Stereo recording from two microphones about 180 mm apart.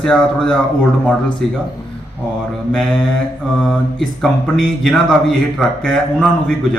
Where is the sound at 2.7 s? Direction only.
5° left (ahead or behind).